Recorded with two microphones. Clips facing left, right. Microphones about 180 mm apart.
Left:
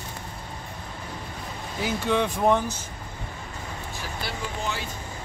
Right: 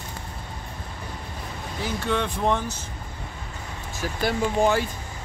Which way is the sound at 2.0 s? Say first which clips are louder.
Left 2 dB; 10° left (ahead or behind).